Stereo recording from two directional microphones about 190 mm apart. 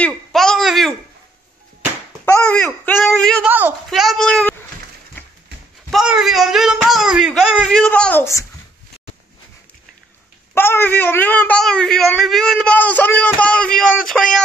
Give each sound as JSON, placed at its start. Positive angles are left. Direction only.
{"t": 0.0, "sound": "a sound", "side_deg": 0}
{"t": 2.2, "sound": "babbling", "side_deg": 15}
{"t": 2.6, "sound": "a woman's voice", "side_deg": 10}
{"t": 3.4, "sound": "speech", "side_deg": -10}
{"t": 5.9, "sound": "speech", "side_deg": 0}
{"t": 10.5, "sound": "a woman's voice", "side_deg": 10}